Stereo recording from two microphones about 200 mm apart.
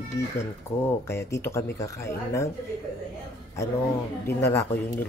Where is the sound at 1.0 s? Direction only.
15° left (ahead or behind).